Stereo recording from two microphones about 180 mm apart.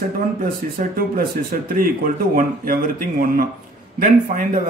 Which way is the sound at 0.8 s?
55° right (ahead or behind).